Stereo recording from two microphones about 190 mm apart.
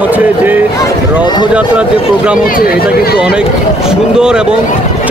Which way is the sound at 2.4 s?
50° left (ahead or behind).